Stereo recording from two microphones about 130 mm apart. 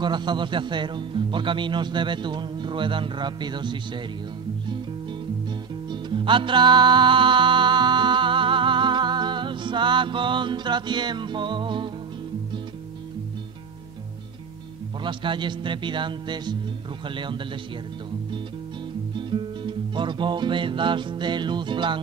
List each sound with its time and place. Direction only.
0.0 s a man's voice: 35° right (ahead or behind)
5.9 s music: 40° right (ahead or behind)
15.0 s a man's voice: 35° right (ahead or behind)
19.1 s music: 40° right (ahead or behind)